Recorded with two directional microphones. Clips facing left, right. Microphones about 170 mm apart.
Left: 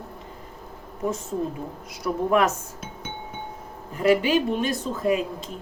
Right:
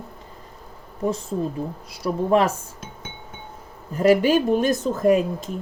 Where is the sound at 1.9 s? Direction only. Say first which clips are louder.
Right 2 dB; 30° right (ahead or behind).